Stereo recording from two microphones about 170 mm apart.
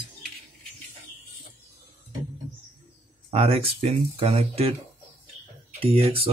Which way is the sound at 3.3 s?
35° right (ahead or behind).